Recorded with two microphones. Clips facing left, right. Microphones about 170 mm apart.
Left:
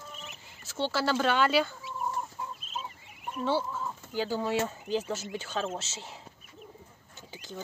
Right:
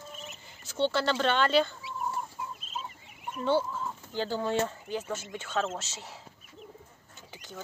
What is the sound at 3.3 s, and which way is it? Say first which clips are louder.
Speech: right 2 dB; centre (ahead or behind).